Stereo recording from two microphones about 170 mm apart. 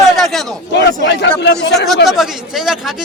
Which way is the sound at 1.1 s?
90° left.